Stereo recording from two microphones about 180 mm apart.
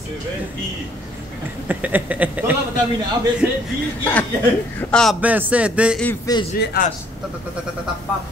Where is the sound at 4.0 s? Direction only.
10° left (ahead or behind).